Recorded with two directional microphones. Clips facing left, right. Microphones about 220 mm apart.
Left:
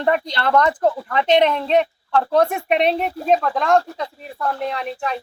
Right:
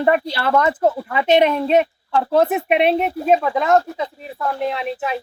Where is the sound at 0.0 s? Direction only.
5° right (ahead or behind).